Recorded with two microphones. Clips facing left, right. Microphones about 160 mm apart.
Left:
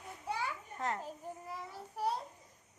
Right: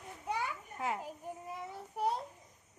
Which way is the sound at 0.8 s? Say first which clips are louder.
Right 1 dB; 10° right (ahead or behind).